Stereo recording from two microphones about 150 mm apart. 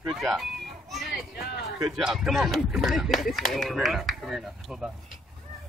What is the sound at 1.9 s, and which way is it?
Speech, 5° right (ahead or behind).